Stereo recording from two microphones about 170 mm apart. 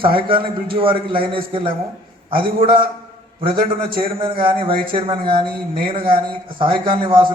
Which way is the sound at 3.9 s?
30° right (ahead or behind).